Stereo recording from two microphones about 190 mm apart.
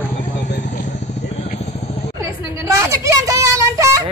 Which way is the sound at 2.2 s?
15° right (ahead or behind).